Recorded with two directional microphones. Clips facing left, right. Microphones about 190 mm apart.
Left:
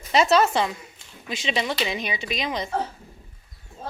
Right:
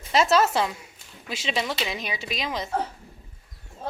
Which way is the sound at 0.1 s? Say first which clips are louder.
Left 2 dB; centre (ahead or behind).